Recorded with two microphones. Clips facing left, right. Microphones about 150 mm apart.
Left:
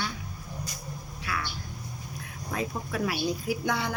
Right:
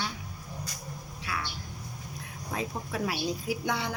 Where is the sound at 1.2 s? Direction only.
25° right (ahead or behind).